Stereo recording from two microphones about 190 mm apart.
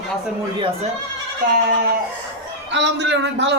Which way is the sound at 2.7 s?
70° right (ahead or behind).